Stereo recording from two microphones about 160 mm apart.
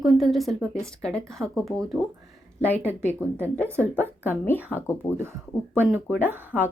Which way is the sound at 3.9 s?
10° left (ahead or behind).